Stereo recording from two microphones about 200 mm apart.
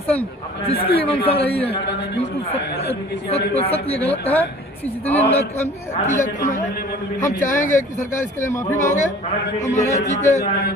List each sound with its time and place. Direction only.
0.7 s a man's voice: 30° left (ahead or behind)
2.7 s speech: 55° left (ahead or behind)
3.5 s a man's voice: 30° left (ahead or behind)
4.0 s speech: 10° left (ahead or behind)
5.0 s a man's voice: 30° left (ahead or behind)
8.4 s speech: 15° left (ahead or behind)
8.8 s a man's voice: 35° left (ahead or behind)